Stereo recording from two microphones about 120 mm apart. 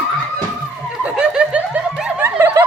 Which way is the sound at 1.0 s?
10° right (ahead or behind).